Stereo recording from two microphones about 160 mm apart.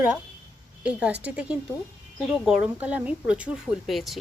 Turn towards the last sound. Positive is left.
turn(degrees=0)  # may be behind; listen again after turning